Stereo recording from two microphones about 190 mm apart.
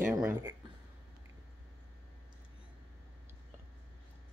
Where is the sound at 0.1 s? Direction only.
10° right (ahead or behind).